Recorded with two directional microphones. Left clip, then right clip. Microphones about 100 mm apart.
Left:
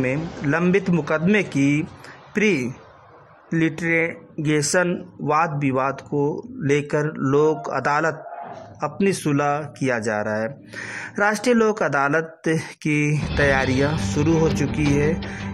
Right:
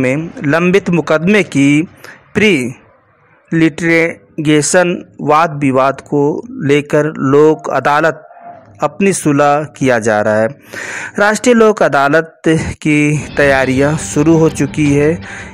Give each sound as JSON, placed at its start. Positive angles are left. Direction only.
{"t": 0.0, "sound": "speech", "side_deg": -30}
{"t": 3.4, "sound": "speech", "side_deg": -15}
{"t": 3.9, "sound": "speech", "side_deg": -25}
{"t": 6.1, "sound": "speech", "side_deg": -45}
{"t": 6.6, "sound": "speech", "side_deg": -25}
{"t": 7.3, "sound": "speech", "side_deg": -40}
{"t": 7.7, "sound": "speech", "side_deg": -25}
{"t": 11.3, "sound": "speech", "side_deg": -15}
{"t": 11.6, "sound": "speech", "side_deg": -45}
{"t": 11.9, "sound": "speech", "side_deg": -30}
{"t": 13.7, "sound": "speech", "side_deg": -10}
{"t": 14.2, "sound": "speech", "side_deg": -45}